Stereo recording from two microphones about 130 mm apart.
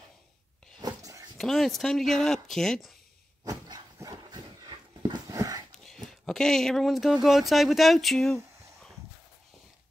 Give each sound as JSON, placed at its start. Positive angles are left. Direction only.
{"t": 0.7, "sound": "a sound", "side_deg": -30}
{"t": 1.4, "sound": "speech", "side_deg": 0}
{"t": 3.4, "sound": "dog", "side_deg": -30}
{"t": 5.9, "sound": "speech", "side_deg": 5}